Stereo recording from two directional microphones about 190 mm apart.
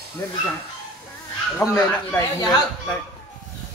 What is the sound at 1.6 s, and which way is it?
Speech, 15° left (ahead or behind).